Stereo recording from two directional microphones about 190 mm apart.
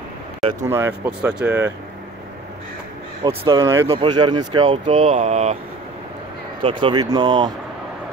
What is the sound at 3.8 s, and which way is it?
Speech, 25° right (ahead or behind).